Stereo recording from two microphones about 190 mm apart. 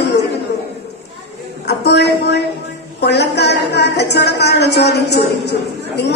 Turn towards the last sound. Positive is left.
turn(degrees=60)  # may be behind; listen again after turning